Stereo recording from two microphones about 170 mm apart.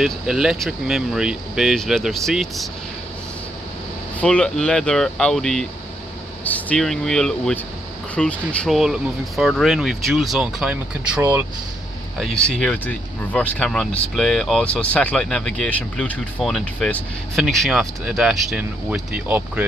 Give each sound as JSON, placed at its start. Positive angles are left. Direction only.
{"t": 0.0, "sound": "speech", "side_deg": -5}
{"t": 4.2, "sound": "speech", "side_deg": 5}
{"t": 11.1, "sound": "speech", "side_deg": -20}
{"t": 12.2, "sound": "speech", "side_deg": 0}